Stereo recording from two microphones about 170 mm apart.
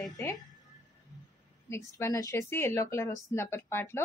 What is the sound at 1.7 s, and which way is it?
Speech, 15° left (ahead or behind).